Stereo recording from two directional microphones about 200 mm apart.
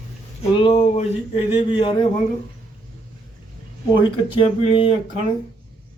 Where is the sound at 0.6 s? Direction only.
30° left (ahead or behind).